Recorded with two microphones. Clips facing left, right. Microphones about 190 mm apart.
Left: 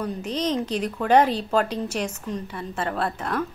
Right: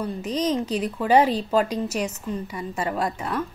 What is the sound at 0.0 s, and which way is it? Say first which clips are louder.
A woman's voice: right 1 dB; 10° right (ahead or behind).